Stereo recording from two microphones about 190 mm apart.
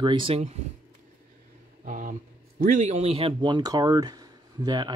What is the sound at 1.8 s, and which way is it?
Speech, 45° right (ahead or behind).